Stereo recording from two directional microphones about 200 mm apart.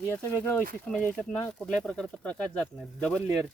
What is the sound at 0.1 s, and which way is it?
Speech, 10° left (ahead or behind).